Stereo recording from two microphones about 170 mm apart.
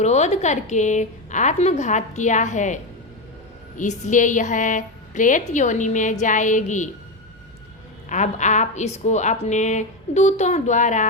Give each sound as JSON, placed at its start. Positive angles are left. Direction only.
{"t": 0.0, "sound": "a woman's voice", "side_deg": 40}
{"t": 8.1, "sound": "a woman's voice", "side_deg": 45}